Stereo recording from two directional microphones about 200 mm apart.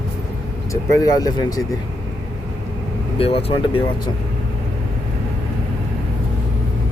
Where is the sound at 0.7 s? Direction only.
20° left (ahead or behind).